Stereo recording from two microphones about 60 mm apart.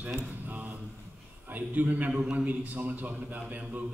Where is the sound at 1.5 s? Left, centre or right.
Right.